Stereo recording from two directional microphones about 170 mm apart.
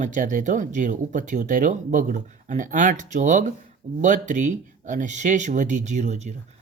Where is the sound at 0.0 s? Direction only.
50° right (ahead or behind).